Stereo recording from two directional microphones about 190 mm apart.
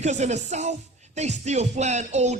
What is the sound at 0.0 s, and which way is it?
Speech, 35° right (ahead or behind).